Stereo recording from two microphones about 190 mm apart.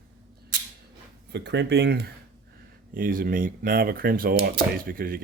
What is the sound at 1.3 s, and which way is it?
Speech, 65° right (ahead or behind).